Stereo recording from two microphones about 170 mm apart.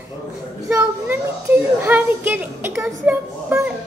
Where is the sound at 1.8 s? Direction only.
10° right (ahead or behind).